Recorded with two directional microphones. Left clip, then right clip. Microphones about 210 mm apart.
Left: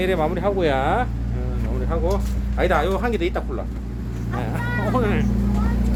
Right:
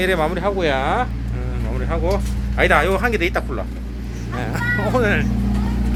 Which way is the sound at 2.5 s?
Centre (ahead or behind).